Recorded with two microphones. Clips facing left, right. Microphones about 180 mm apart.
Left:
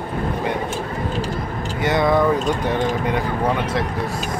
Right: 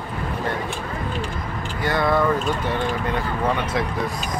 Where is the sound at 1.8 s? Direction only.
20° left (ahead or behind).